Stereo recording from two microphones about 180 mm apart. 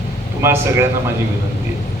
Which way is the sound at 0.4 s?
15° right (ahead or behind).